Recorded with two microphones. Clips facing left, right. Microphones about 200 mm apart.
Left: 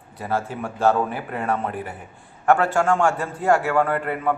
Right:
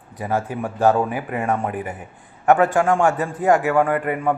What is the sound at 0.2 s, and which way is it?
A man's voice, 15° right (ahead or behind).